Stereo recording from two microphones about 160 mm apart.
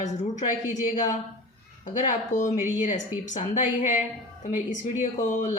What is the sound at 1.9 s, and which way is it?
Speech, 50° left (ahead or behind).